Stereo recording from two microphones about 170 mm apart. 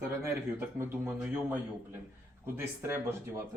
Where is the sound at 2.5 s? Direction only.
15° right (ahead or behind).